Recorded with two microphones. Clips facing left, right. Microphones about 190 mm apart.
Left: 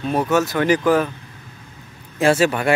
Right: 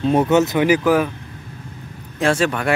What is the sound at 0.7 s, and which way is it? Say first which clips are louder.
Speech: right 1 dB; 10° right (ahead or behind).